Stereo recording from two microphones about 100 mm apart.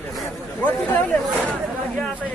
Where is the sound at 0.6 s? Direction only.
15° left (ahead or behind).